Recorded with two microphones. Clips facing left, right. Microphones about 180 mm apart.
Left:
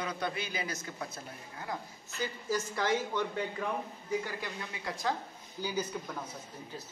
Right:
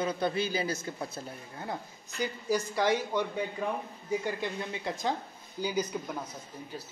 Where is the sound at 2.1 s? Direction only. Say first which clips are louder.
Right 4 dB; 15° right (ahead or behind).